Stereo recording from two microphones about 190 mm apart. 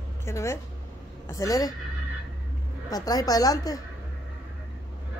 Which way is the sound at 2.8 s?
20° left (ahead or behind).